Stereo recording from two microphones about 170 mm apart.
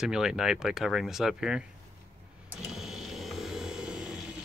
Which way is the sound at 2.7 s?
Centre (ahead or behind).